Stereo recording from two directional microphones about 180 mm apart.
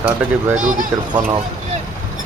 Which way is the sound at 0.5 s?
45° right (ahead or behind).